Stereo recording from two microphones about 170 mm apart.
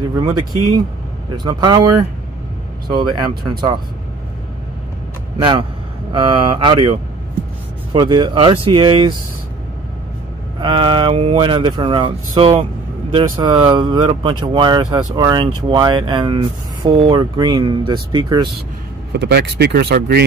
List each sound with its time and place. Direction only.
0.1 s speech: 25° right (ahead or behind)
2.9 s speech: 25° right (ahead or behind)
5.4 s speech: 30° right (ahead or behind)
10.6 s speech: 30° right (ahead or behind)
19.1 s speech: 75° right (ahead or behind)